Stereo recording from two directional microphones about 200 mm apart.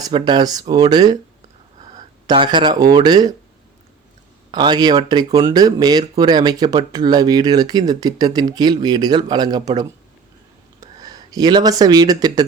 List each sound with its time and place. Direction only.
0.0 s speech: 20° right (ahead or behind)
2.2 s speech: 25° right (ahead or behind)
4.5 s speech: 20° right (ahead or behind)